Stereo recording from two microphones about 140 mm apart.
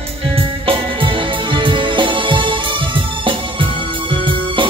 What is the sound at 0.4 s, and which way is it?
Music, 40° right (ahead or behind).